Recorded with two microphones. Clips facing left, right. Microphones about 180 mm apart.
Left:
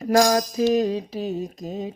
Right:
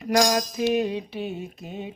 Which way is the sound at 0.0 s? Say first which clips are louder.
Left 3 dB; 35° left (ahead or behind).